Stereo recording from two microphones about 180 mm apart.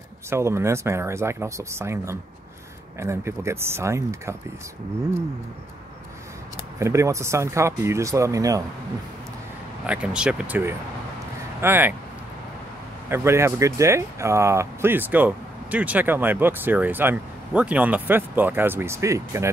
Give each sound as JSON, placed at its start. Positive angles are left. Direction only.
{"t": 0.3, "sound": "speech", "side_deg": -15}
{"t": 6.5, "sound": "speech", "side_deg": -15}
{"t": 9.8, "sound": "speech", "side_deg": -5}
{"t": 13.1, "sound": "speech", "side_deg": -15}